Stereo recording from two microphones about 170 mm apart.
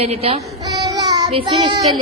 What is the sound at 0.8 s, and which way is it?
Child singing, 25° right (ahead or behind).